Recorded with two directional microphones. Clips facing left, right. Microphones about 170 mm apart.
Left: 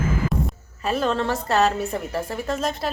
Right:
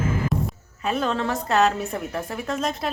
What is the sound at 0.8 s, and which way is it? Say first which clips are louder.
A woman's voice: left 2 dB; centre (ahead or behind).